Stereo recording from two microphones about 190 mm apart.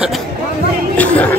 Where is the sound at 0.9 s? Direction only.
10° left (ahead or behind).